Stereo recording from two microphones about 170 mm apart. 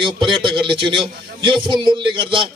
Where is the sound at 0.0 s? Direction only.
30° right (ahead or behind).